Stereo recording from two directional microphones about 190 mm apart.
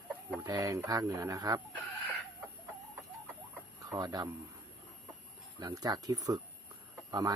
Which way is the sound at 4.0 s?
20° right (ahead or behind).